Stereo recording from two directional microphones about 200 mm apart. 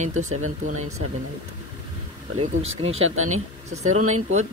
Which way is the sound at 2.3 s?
85° right.